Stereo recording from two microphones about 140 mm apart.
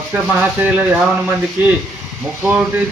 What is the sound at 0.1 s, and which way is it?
A man's voice, 10° right (ahead or behind).